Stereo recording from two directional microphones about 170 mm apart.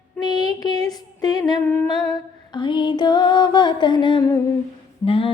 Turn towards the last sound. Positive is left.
turn(degrees=30)  # may be behind; listen again after turning